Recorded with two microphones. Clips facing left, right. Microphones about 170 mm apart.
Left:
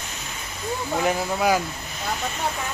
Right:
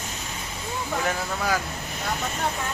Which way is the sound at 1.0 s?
15° left (ahead or behind).